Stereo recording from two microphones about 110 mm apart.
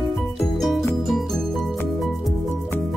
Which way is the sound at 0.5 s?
Centre (ahead or behind).